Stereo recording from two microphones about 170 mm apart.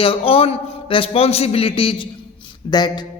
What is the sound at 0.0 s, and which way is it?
A man's voice, 35° left (ahead or behind).